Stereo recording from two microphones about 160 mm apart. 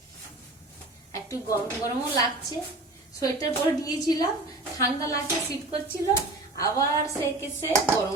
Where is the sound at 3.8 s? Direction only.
20° left (ahead or behind).